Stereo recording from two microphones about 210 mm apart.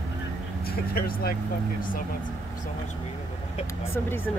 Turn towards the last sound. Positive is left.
turn(degrees=10)  # may be behind; listen again after turning